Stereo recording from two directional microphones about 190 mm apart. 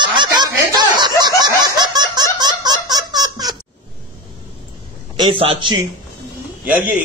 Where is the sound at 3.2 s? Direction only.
20° right (ahead or behind).